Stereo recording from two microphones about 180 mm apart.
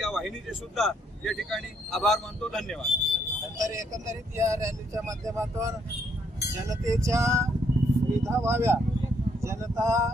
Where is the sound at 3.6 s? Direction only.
15° right (ahead or behind).